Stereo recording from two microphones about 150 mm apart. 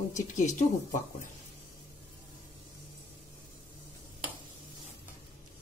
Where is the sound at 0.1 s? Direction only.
55° left (ahead or behind).